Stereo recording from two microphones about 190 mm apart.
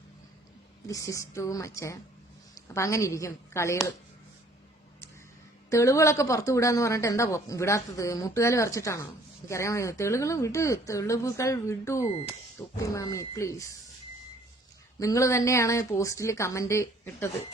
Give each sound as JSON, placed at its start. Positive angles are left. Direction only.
{"t": 0.9, "sound": "speech", "side_deg": 15}
{"t": 5.7, "sound": "speech", "side_deg": 15}
{"t": 14.9, "sound": "speech", "side_deg": 15}